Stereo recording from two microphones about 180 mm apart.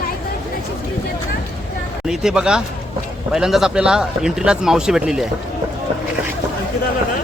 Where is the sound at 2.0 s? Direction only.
5° right (ahead or behind).